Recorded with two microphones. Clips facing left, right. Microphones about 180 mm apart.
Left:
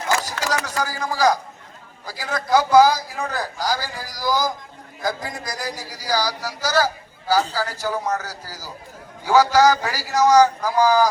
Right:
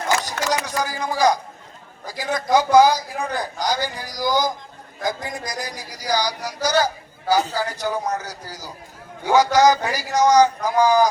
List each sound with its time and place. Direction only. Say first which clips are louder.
0.3 s speech: right 1 dB; 20° right (ahead or behind)